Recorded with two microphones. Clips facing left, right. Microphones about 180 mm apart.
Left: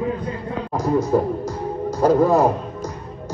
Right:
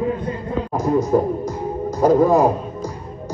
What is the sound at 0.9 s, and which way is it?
A man's voice, 20° right (ahead or behind).